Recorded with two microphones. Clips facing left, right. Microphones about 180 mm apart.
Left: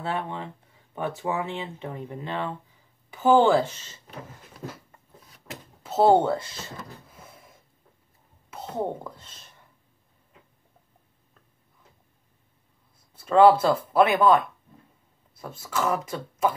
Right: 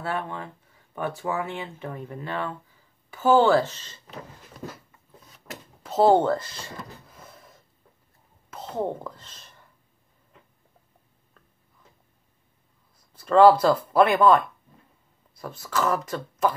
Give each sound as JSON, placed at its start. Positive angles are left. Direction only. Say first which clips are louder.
{"t": 0.0, "sound": "speech", "louder": "even", "side_deg": 20}
{"t": 5.8, "sound": "a sound", "louder": "even", "side_deg": 5}
{"t": 8.5, "sound": "a woman's voice", "louder": "right 1 dB", "side_deg": 10}
{"t": 13.2, "sound": "speech", "louder": "right 1 dB", "side_deg": 10}
{"t": 15.5, "sound": "speech", "louder": "right 1 dB", "side_deg": 10}